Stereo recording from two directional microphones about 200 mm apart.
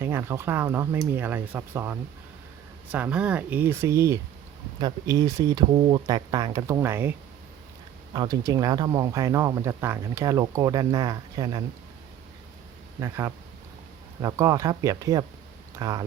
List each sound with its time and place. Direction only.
0.0 s speech: 10° right (ahead or behind)
13.0 s speech: 15° right (ahead or behind)